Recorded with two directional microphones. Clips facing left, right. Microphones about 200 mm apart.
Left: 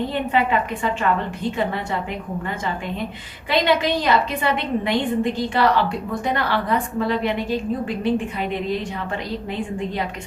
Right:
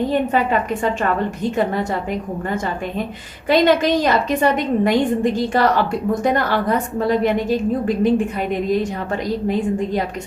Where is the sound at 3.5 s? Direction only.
45° right (ahead or behind).